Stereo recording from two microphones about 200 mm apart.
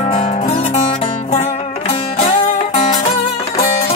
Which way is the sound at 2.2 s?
40° left (ahead or behind).